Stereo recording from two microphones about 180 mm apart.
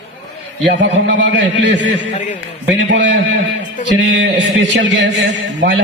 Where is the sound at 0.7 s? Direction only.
75° right (ahead or behind).